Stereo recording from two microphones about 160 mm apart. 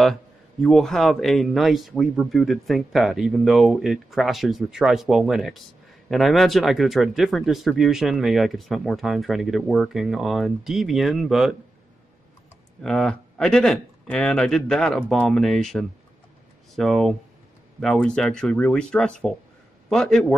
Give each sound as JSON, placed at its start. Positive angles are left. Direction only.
{"t": 0.0, "sound": "speech", "side_deg": 0}
{"t": 12.8, "sound": "speech", "side_deg": 5}